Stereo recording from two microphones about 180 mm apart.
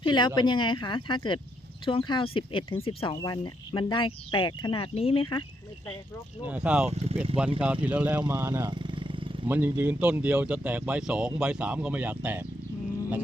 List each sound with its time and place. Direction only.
0.0 s speech: 25° left (ahead or behind)
6.4 s speech: 5° right (ahead or behind)
6.8 s speech: 35° right (ahead or behind)
7.6 s speech: 5° right (ahead or behind)
8.7 s a sound: 25° right (ahead or behind)
9.5 s speech: 10° right (ahead or behind)